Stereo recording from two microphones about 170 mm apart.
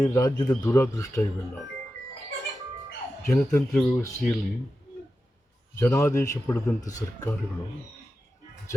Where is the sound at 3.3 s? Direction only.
15° left (ahead or behind).